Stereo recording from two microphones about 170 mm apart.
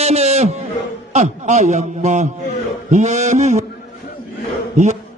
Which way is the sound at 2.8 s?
45° right (ahead or behind).